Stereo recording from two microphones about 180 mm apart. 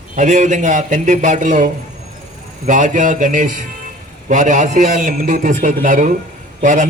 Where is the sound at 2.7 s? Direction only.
45° right (ahead or behind).